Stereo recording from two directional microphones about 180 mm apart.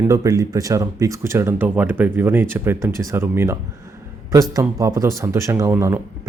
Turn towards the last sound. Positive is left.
turn(degrees=-15)  # may be behind; listen again after turning